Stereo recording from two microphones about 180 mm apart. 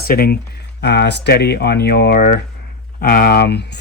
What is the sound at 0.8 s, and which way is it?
Speech, 70° left (ahead or behind).